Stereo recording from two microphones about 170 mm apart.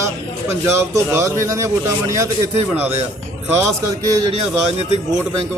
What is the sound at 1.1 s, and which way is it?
Speech, 15° right (ahead or behind).